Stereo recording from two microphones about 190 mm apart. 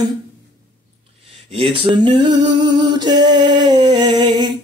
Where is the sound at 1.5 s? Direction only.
25° right (ahead or behind).